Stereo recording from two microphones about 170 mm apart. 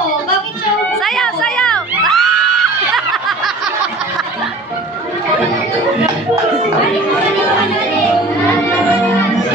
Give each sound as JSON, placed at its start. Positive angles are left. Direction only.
{"t": 0.9, "sound": "music", "side_deg": 0}